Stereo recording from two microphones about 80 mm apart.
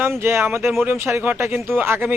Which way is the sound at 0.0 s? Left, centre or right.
Right.